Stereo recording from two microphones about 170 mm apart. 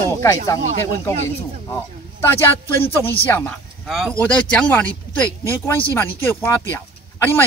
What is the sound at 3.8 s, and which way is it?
Speech, centre (ahead or behind).